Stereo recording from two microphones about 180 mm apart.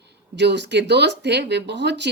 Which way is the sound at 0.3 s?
75° right (ahead or behind).